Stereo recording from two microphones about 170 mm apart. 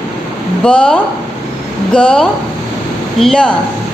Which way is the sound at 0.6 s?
5° left (ahead or behind).